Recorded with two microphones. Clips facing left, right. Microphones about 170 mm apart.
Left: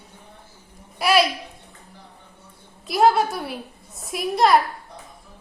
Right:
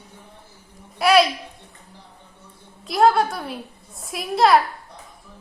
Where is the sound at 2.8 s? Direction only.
Centre (ahead or behind).